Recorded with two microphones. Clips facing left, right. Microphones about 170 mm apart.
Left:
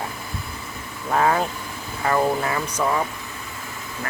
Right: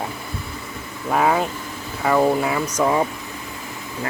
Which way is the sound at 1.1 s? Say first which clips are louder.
Right 1 dB; 10° right (ahead or behind).